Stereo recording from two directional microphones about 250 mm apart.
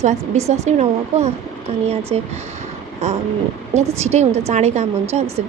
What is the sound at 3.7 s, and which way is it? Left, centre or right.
Speech, right.